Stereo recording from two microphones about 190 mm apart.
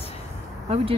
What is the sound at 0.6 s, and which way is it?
Speech, 30° right (ahead or behind).